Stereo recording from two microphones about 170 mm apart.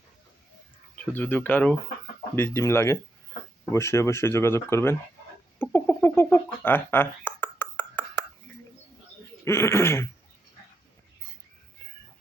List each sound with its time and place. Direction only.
1.1 s speech: 10° left (ahead or behind)
6.0 s a sound: 15° left (ahead or behind)
9.4 s speech: 15° left (ahead or behind)